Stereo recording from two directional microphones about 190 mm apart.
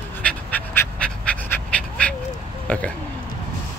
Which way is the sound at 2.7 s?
5° left (ahead or behind).